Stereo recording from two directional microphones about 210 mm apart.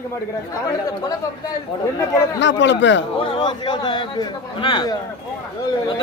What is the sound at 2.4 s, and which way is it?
Speech, 60° left (ahead or behind).